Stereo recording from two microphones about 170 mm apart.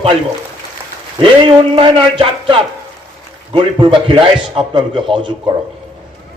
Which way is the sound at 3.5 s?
30° right (ahead or behind).